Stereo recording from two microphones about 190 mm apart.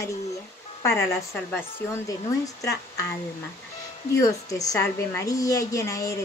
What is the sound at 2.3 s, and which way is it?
Speech, 15° left (ahead or behind).